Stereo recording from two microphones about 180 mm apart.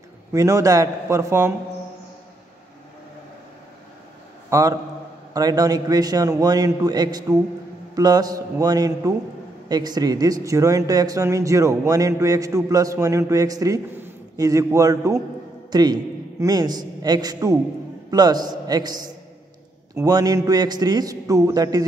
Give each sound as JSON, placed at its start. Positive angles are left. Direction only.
{"t": 0.3, "sound": "a man's voice", "side_deg": -20}
{"t": 4.5, "sound": "a man's voice", "side_deg": -20}
{"t": 20.0, "sound": "speech", "side_deg": -20}